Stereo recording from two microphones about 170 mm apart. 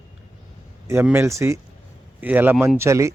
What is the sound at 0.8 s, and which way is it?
A man's voice, 15° right (ahead or behind).